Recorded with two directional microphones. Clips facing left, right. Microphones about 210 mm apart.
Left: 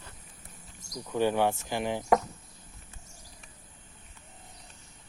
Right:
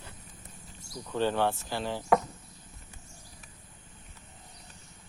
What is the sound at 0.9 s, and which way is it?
Speech, 15° left (ahead or behind).